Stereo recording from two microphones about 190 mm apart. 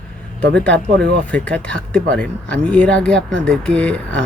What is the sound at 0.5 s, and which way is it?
Speech, 5° left (ahead or behind).